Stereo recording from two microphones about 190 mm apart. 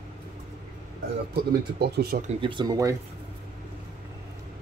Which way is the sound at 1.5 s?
55° right (ahead or behind).